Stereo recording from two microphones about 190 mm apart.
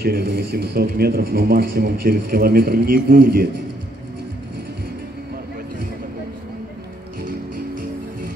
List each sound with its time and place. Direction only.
0.0 s a man's voice: 55° right (ahead or behind)